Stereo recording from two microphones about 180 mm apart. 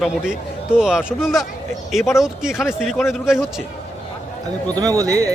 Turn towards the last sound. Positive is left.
turn(degrees=-20)  # may be behind; listen again after turning